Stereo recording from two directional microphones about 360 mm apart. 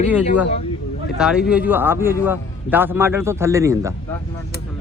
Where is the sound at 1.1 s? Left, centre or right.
Centre.